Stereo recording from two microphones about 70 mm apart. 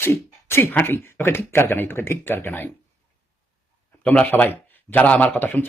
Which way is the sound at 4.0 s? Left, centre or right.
Left.